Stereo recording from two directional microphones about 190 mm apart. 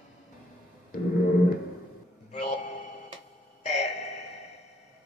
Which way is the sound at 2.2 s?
35° left (ahead or behind).